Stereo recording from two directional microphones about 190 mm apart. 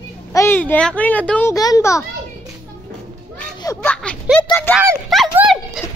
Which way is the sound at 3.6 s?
20° left (ahead or behind).